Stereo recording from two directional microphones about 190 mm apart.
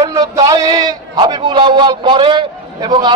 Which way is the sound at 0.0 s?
20° right (ahead or behind).